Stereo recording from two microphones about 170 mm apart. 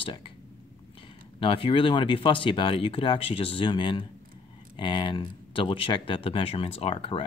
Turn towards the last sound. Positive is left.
turn(degrees=35)  # may be behind; listen again after turning